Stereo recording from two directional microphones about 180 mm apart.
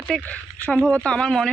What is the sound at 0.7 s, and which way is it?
Speech, centre (ahead or behind).